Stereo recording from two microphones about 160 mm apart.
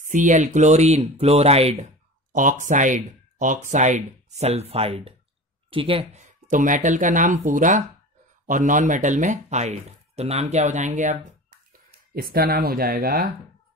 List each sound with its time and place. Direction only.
0.0 s speech: 50° right (ahead or behind)
2.3 s speech: 55° right (ahead or behind); by 6.2 s 35° right (ahead or behind)
6.2 s speech: 55° right (ahead or behind)
12.2 s speech: 65° right (ahead or behind)